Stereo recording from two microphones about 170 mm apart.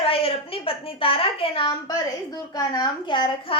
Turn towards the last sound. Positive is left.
turn(degrees=30)  # may be behind; listen again after turning